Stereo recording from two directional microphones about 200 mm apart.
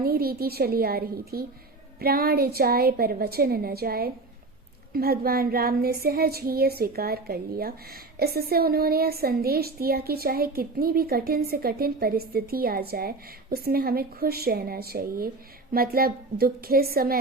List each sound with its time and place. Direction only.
0.0 s a woman's voice: 50° right (ahead or behind)